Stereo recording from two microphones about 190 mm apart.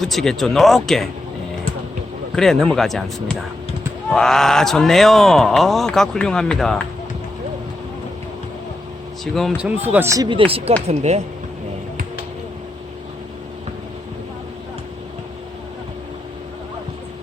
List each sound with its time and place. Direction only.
0.0 s speech: centre (ahead or behind)
2.3 s speech: centre (ahead or behind)
9.2 s speech: centre (ahead or behind); by 11.2 s 35° right (ahead or behind)